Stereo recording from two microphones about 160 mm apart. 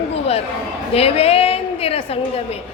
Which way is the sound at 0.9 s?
40° left (ahead or behind).